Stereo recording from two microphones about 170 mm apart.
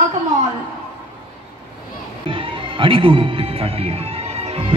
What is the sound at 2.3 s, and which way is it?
Speech, 30° right (ahead or behind).